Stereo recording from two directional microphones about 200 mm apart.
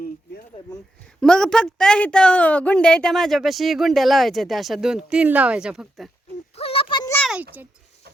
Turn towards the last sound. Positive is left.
turn(degrees=-5)  # may be behind; listen again after turning